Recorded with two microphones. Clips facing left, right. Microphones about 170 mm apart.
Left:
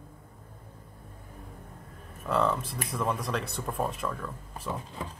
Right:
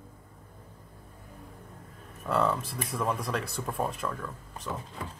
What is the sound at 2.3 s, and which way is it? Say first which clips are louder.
Speech: even; centre (ahead or behind).